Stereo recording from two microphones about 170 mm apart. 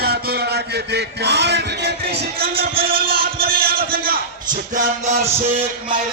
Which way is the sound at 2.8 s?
35° right (ahead or behind).